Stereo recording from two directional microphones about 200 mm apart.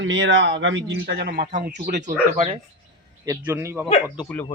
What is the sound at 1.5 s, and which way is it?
Speech, 40° right (ahead or behind).